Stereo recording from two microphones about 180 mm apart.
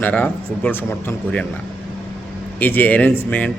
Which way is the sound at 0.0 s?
10° left (ahead or behind).